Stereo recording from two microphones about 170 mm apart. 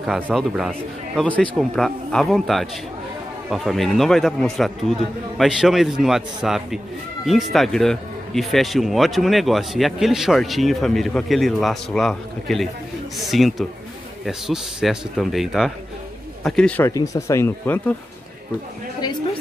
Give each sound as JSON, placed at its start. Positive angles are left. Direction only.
{"t": 0.0, "sound": "speech", "side_deg": 0}
{"t": 16.9, "sound": "speech", "side_deg": 20}